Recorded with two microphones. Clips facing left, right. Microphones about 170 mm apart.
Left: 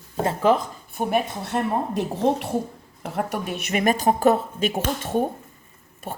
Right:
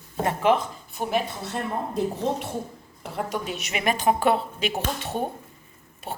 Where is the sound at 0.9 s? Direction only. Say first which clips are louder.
Left 3 dB; 60° left (ahead or behind).